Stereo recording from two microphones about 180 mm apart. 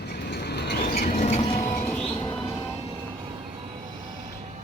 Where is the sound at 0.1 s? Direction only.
65° left (ahead or behind); by 1.4 s 45° left (ahead or behind).